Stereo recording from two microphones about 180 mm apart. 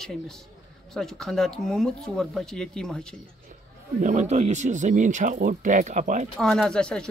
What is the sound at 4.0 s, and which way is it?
Speech, 40° right (ahead or behind).